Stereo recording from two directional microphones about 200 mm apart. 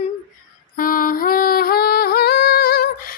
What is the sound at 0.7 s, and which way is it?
Music, 45° left (ahead or behind).